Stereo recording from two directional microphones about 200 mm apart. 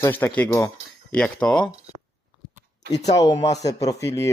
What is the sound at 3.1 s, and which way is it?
A man's voice, 20° left (ahead or behind).